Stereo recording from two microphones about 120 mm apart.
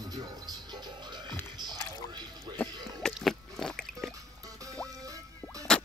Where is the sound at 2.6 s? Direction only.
5° left (ahead or behind).